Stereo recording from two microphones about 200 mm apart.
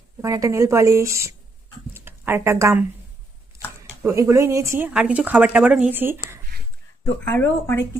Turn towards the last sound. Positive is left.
turn(degrees=10)  # may be behind; listen again after turning